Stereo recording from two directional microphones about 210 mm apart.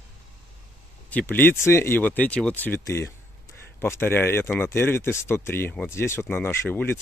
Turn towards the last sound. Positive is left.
turn(degrees=10)  # may be behind; listen again after turning